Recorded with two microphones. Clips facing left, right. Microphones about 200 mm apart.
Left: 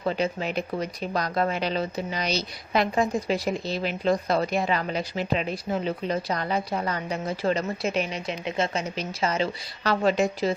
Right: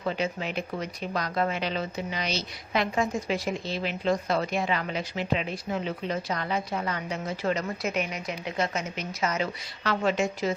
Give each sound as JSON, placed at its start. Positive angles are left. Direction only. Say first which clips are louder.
{"t": 0.0, "sound": "speech", "louder": "left 3 dB", "side_deg": 35}